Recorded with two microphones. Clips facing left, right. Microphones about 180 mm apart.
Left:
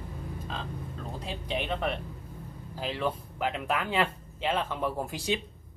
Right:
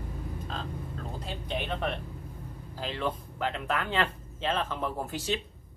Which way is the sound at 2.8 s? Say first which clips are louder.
Left 1 dB; 10° left (ahead or behind).